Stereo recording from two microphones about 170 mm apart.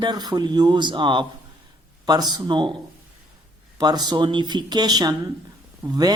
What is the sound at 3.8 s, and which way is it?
Speech, 25° right (ahead or behind).